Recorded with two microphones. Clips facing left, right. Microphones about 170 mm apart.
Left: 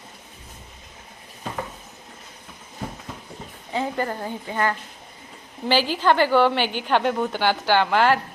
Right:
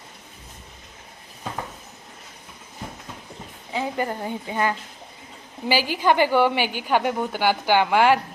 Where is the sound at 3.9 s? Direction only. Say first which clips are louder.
Even; 15° right (ahead or behind).